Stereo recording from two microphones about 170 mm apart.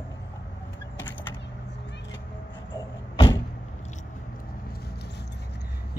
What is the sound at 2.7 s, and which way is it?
Door, 20° left (ahead or behind).